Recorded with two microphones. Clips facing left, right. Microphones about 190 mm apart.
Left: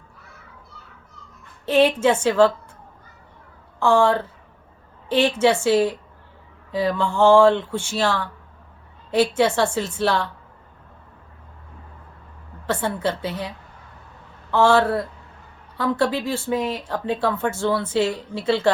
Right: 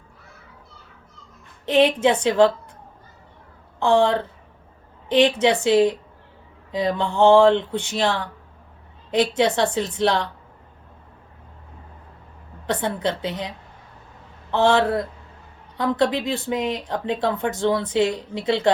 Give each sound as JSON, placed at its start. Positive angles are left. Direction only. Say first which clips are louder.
{"t": 1.6, "sound": "a woman's voice", "louder": "even", "side_deg": -15}
{"t": 3.8, "sound": "a woman's voice", "louder": "even", "side_deg": -20}
{"t": 9.7, "sound": "speech", "louder": "right 1 dB", "side_deg": -20}
{"t": 12.6, "sound": "speech", "louder": "even", "side_deg": -20}
{"t": 14.5, "sound": "speech", "louder": "left 1 dB", "side_deg": -20}